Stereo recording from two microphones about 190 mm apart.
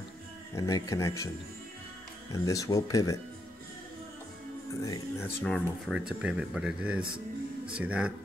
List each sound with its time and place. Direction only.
0.6 s speech: 20° left (ahead or behind)
2.3 s speech: 20° left (ahead or behind)
4.8 s speech: 15° left (ahead or behind)
5.9 s speech: 5° right (ahead or behind)